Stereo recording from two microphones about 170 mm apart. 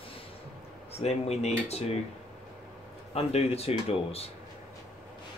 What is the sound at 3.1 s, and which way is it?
Speech, 35° left (ahead or behind).